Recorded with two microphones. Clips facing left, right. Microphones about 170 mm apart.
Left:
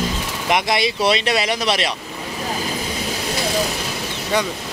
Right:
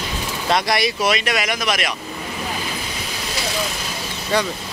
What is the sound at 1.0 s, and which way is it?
Speech, 30° left (ahead or behind).